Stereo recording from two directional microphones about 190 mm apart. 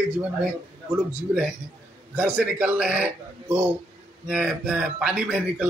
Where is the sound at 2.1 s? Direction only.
5° right (ahead or behind).